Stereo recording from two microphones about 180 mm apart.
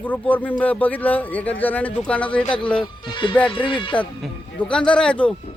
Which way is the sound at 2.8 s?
25° left (ahead or behind).